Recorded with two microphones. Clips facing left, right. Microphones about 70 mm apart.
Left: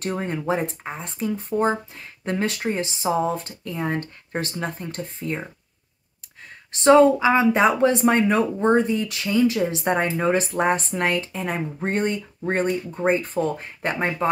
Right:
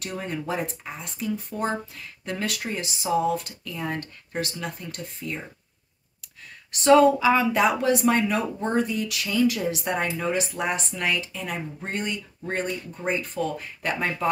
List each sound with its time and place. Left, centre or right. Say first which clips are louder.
0.0 s speech: left 5 dB; left
6.7 s speech: left 2 dB; left